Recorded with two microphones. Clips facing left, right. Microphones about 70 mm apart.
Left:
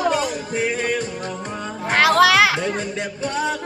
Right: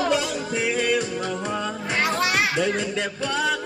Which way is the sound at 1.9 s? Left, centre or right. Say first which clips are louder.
Left 8 dB; left.